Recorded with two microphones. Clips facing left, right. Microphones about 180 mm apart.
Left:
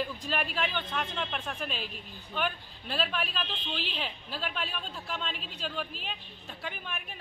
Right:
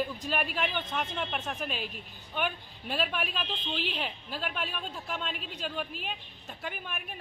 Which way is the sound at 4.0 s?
10° right (ahead or behind).